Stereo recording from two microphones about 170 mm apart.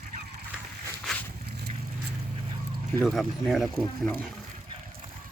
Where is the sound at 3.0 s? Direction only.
Centre (ahead or behind).